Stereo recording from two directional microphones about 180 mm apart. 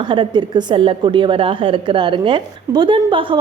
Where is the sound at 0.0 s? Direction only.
25° right (ahead or behind).